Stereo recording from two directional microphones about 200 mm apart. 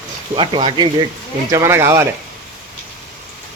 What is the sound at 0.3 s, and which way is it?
Speech, 25° right (ahead or behind).